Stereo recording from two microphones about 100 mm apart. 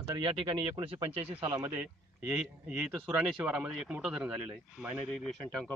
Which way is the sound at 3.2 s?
10° right (ahead or behind).